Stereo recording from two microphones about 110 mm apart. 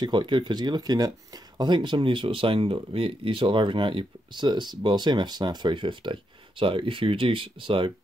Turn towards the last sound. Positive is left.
turn(degrees=-50)  # may be behind; listen again after turning